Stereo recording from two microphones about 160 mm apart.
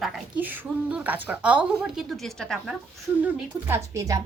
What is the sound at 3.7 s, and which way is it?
Speech, 20° right (ahead or behind).